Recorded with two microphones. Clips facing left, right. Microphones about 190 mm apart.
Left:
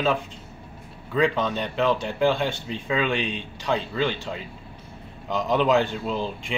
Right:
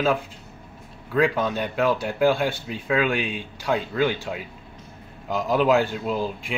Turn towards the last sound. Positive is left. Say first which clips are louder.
# right 1 dB
turn(degrees=-5)  # may be behind; listen again after turning